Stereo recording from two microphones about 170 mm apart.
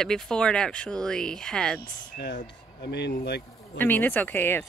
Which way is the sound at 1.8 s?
75° left (ahead or behind).